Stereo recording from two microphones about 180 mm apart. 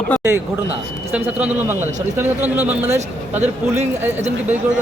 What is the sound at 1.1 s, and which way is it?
A man's voice, 10° right (ahead or behind).